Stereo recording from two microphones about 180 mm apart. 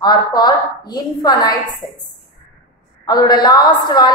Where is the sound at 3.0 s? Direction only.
25° left (ahead or behind).